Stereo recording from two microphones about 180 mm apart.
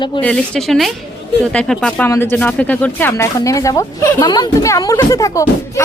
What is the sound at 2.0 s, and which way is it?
A woman's voice, 15° left (ahead or behind).